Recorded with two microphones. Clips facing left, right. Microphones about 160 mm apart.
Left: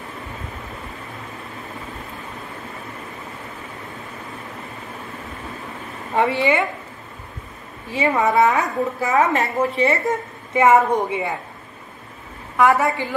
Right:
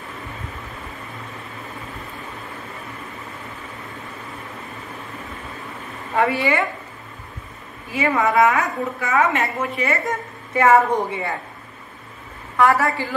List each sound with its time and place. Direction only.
6.1 s a woman's voice: 25° left (ahead or behind)
7.9 s a woman's voice: 30° left (ahead or behind)
10.5 s a woman's voice: 20° left (ahead or behind)
12.5 s a woman's voice: 20° left (ahead or behind)